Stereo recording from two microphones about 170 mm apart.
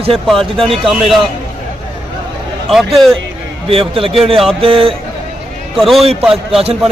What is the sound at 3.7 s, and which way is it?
Speech, 35° right (ahead or behind).